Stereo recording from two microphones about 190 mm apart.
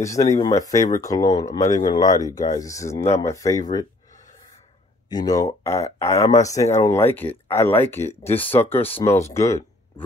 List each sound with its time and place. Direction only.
0.0 s speech: 15° left (ahead or behind)
5.1 s speech: 20° left (ahead or behind)
8.9 s speech: 35° left (ahead or behind)
9.2 s speech: 15° left (ahead or behind)